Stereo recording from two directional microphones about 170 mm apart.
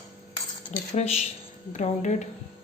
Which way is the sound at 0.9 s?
40° left (ahead or behind).